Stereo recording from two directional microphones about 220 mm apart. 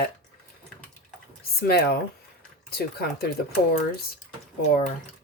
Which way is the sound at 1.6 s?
45° left (ahead or behind).